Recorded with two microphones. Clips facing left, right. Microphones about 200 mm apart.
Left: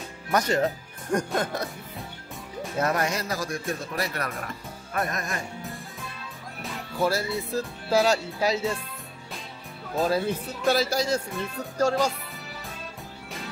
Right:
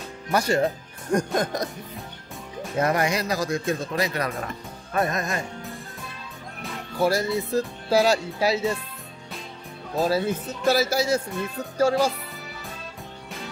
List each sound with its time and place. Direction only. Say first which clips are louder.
0.3 s speech: right 2 dB; 10° right (ahead or behind)
2.8 s speech: right 3 dB; 10° right (ahead or behind)
4.9 s music: right 5 dB; 30° right (ahead or behind)
7.0 s speech: right 3 dB; 15° right (ahead or behind)
9.9 s speech: right 2 dB; 5° right (ahead or behind)